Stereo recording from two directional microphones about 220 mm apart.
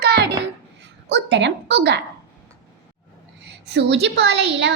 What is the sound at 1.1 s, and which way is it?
Speech, 50° right (ahead or behind).